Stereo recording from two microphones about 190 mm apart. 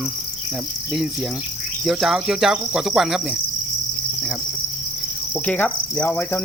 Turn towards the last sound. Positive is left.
turn(degrees=10)  # may be behind; listen again after turning